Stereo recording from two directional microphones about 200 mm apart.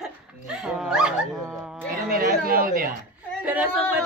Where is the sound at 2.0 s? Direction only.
45° right (ahead or behind).